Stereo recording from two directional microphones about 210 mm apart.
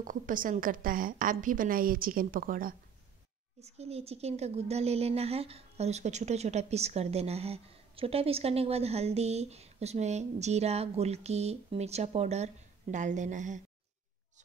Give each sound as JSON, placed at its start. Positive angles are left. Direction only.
{"t": 0.0, "sound": "a woman's voice", "side_deg": -40}
{"t": 3.6, "sound": "a woman's voice", "side_deg": -30}